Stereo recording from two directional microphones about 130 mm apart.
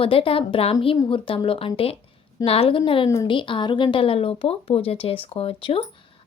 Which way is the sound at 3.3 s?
40° left (ahead or behind).